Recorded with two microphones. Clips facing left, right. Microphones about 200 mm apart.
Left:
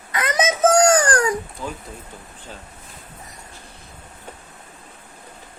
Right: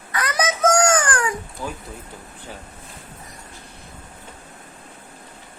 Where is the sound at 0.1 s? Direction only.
20° left (ahead or behind); by 1.3 s 40° left (ahead or behind).